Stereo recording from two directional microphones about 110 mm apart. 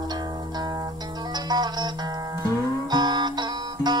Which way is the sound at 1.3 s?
40° right (ahead or behind).